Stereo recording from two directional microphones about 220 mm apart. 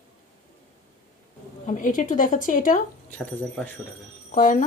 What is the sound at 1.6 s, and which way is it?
A woman's voice, 35° left (ahead or behind).